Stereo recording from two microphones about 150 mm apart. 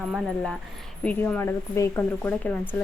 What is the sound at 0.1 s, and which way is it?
A woman's voice, centre (ahead or behind).